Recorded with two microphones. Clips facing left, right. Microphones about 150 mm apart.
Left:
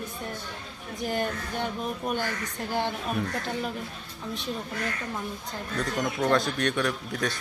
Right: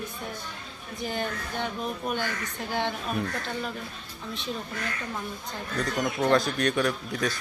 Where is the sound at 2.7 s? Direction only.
5° left (ahead or behind).